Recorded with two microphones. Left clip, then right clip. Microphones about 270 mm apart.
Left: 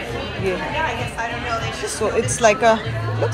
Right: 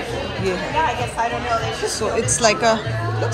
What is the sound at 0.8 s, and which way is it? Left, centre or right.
Speech, right.